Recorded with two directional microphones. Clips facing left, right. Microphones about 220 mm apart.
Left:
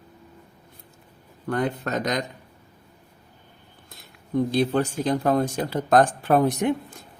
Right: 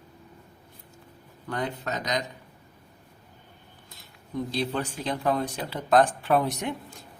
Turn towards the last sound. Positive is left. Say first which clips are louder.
# left 5 dB
turn(degrees=50)  # may be behind; listen again after turning